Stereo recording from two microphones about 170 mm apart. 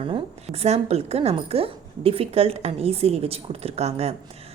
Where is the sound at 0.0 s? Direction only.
35° right (ahead or behind).